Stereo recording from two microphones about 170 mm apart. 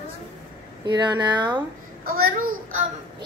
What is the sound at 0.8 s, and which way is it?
Speech, 25° right (ahead or behind).